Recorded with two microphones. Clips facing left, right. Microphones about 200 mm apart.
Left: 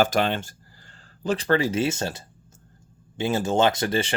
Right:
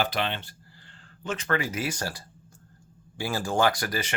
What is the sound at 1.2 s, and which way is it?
Speech, 35° left (ahead or behind).